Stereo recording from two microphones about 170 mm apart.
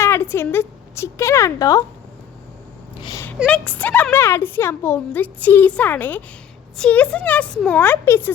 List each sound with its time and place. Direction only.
0.0 s a woman's voice: 15° left (ahead or behind)
3.0 s speech: 25° left (ahead or behind)
3.5 s a woman's voice: 10° left (ahead or behind)